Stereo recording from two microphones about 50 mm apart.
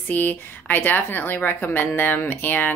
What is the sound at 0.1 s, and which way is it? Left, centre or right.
Speech, left.